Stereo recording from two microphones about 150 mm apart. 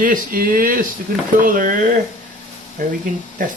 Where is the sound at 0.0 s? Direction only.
70° right (ahead or behind).